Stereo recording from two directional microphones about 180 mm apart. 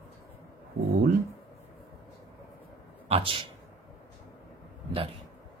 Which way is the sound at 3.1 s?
30° right (ahead or behind).